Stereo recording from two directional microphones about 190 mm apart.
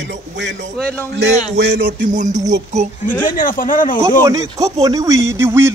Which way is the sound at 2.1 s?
40° right (ahead or behind).